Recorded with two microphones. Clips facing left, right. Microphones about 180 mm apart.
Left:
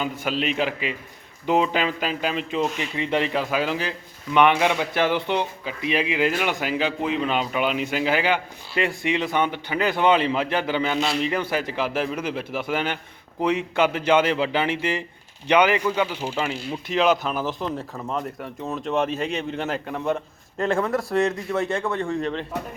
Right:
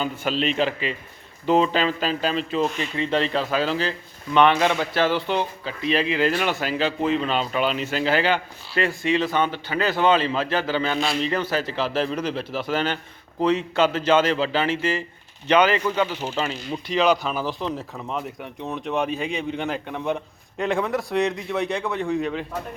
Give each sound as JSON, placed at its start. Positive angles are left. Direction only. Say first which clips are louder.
{"t": 0.0, "sound": "speech", "louder": "right 1 dB", "side_deg": 10}